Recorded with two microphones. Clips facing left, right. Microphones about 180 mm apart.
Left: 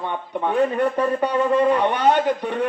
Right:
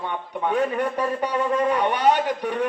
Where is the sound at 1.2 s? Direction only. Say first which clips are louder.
Left 4 dB; 35° left (ahead or behind).